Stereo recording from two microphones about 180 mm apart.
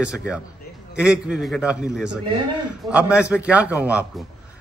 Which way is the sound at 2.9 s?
5° right (ahead or behind).